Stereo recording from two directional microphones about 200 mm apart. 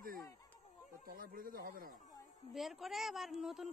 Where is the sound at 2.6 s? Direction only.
Centre (ahead or behind).